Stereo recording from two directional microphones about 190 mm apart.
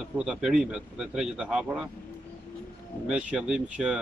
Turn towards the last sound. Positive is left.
turn(degrees=-5)  # may be behind; listen again after turning